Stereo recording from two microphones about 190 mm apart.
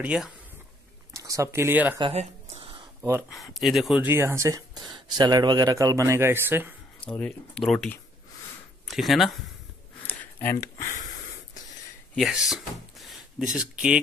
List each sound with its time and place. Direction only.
0.0 s speech: 5° right (ahead or behind)
1.1 s speech: 15° right (ahead or behind)
2.0 s a sound: 30° right (ahead or behind)
3.0 s speech: 10° right (ahead or behind)
3.3 s speech: centre (ahead or behind)
7.0 s speech: 5° left (ahead or behind)
10.5 s a sound: 40° left (ahead or behind)
12.2 s speech: centre (ahead or behind)